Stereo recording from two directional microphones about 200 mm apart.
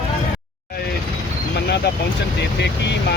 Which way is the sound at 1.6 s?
55° left (ahead or behind).